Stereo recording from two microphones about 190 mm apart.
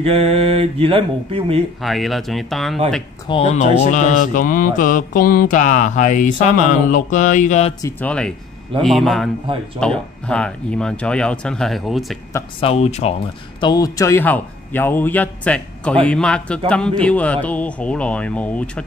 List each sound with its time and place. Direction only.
0.0 s mantra: 30° right (ahead or behind)
1.8 s speech: centre (ahead or behind)
3.3 s mantra: 35° left (ahead or behind)
6.4 s speech: 40° left (ahead or behind)
7.8 s speech: 5° left (ahead or behind)
12.5 s speech: 30° left (ahead or behind)
13.6 s a man's voice: 20° left (ahead or behind)